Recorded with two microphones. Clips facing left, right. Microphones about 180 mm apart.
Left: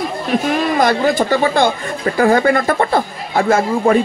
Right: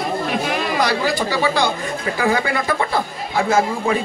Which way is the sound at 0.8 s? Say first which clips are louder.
Left 5 dB; 50° left (ahead or behind).